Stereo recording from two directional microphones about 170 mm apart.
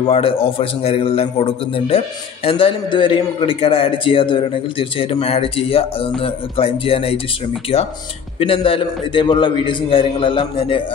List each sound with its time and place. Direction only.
0.0 s a man's voice: 35° left (ahead or behind)